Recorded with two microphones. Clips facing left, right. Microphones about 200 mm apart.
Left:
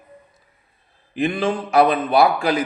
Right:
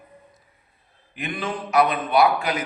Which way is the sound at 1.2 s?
30° left (ahead or behind).